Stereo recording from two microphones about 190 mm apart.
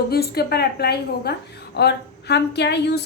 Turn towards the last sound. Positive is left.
turn(degrees=60)  # may be behind; listen again after turning